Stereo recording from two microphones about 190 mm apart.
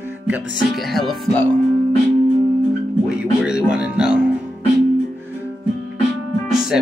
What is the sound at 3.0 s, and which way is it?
Music, 5° right (ahead or behind).